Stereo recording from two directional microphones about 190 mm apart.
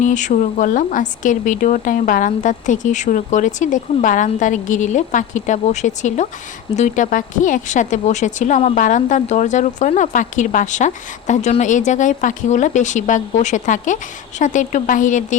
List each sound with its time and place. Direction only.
0.0 s a woman's voice: 40° left (ahead or behind)